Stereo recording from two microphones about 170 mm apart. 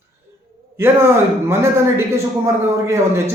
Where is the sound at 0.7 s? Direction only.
15° right (ahead or behind).